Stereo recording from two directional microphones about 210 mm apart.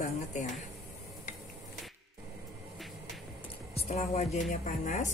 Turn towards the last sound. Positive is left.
turn(degrees=40)  # may be behind; listen again after turning